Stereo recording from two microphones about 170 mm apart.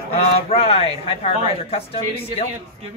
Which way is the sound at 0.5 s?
35° left (ahead or behind).